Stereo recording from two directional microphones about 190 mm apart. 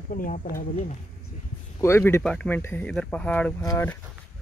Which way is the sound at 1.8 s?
15° left (ahead or behind).